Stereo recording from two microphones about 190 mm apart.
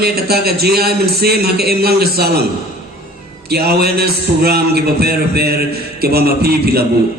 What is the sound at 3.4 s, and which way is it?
A man's voice, 55° right (ahead or behind).